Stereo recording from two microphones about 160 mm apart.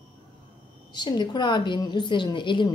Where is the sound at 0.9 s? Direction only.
25° left (ahead or behind).